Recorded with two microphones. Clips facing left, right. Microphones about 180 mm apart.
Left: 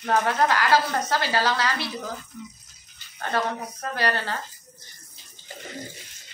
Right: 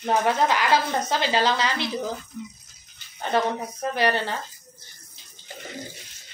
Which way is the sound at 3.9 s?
20° right (ahead or behind).